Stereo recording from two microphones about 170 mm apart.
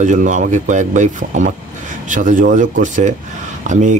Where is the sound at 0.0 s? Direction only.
45° right (ahead or behind).